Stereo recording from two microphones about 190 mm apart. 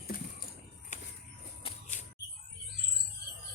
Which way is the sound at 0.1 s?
50° left (ahead or behind).